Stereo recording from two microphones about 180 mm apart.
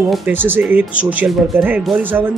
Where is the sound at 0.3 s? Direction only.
10° right (ahead or behind).